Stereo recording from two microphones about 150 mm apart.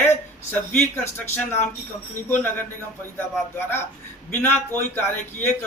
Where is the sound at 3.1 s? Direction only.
15° left (ahead or behind).